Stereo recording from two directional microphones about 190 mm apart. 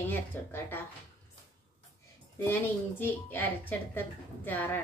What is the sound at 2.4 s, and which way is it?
Speech, 10° left (ahead or behind).